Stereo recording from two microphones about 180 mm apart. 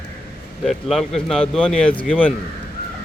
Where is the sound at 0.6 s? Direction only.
Centre (ahead or behind).